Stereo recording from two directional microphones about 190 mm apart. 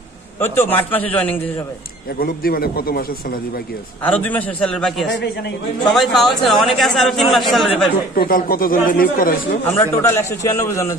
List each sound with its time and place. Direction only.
0.4 s a man's voice: 10° left (ahead or behind)
2.1 s speech: 50° left (ahead or behind)
4.0 s a man's voice: 10° left (ahead or behind)
5.1 s a man's voice: 65° left (ahead or behind)
5.9 s speech: centre (ahead or behind)
8.2 s speech: 50° left (ahead or behind)
9.7 s a man's voice: 15° left (ahead or behind)